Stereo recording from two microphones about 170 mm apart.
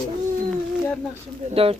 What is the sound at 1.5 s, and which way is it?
Speech, 35° right (ahead or behind).